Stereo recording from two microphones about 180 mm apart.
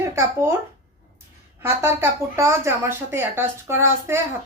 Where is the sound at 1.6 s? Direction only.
15° right (ahead or behind).